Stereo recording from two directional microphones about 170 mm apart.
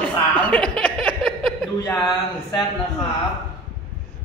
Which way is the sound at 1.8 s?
25° left (ahead or behind).